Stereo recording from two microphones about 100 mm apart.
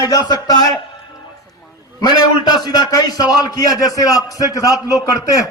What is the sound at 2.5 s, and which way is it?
A man's voice, 40° left (ahead or behind).